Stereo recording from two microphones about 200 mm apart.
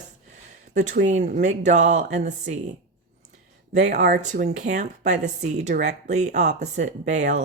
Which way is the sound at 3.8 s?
35° right (ahead or behind).